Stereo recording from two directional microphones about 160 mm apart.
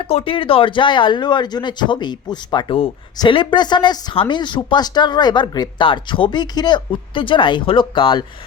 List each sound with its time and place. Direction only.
0.0 s speech: 35° left (ahead or behind)